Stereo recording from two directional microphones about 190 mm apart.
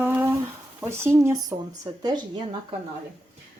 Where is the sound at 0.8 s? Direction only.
15° right (ahead or behind).